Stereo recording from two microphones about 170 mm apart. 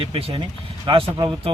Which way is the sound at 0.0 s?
35° right (ahead or behind).